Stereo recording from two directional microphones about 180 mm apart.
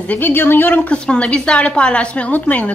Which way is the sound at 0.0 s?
10° left (ahead or behind).